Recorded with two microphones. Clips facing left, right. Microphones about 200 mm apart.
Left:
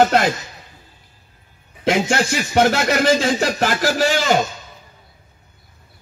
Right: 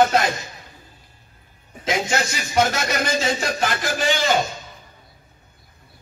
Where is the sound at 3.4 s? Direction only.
75° left (ahead or behind).